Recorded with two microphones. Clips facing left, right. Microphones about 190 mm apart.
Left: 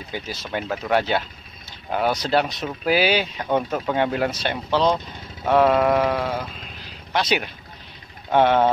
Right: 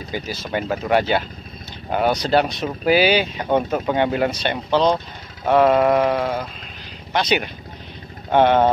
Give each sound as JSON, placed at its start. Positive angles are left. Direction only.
{"t": 0.1, "sound": "speech", "side_deg": 0}